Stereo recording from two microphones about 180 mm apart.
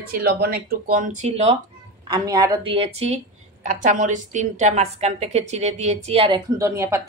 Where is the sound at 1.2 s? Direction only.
35° right (ahead or behind).